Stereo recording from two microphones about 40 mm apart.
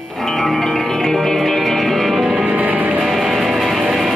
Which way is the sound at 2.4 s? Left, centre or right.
Right.